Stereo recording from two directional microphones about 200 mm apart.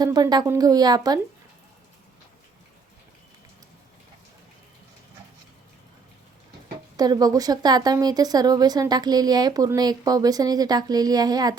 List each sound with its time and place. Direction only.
0.0 s speech: 20° right (ahead or behind)
6.9 s speech: 20° right (ahead or behind)